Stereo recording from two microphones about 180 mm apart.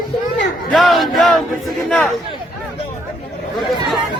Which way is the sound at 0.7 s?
Centre (ahead or behind).